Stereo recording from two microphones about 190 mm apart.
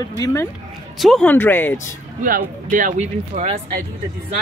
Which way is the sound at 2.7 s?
40° right (ahead or behind).